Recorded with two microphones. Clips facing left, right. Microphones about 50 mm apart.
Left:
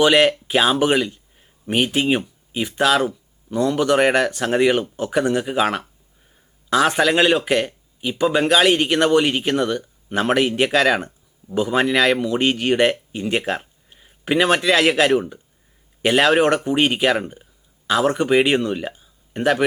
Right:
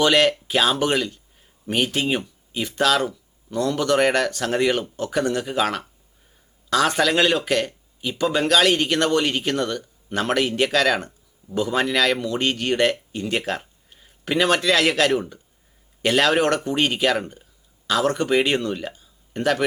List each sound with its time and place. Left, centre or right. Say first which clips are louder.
0.0 s speech: left 3 dB; centre